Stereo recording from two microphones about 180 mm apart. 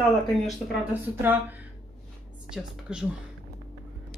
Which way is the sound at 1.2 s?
10° right (ahead or behind).